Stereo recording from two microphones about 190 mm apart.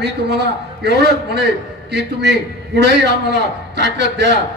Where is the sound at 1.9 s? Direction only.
65° right (ahead or behind).